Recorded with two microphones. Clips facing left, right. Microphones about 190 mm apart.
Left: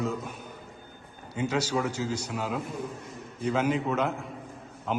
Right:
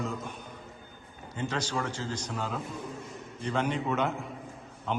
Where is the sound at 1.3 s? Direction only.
10° left (ahead or behind).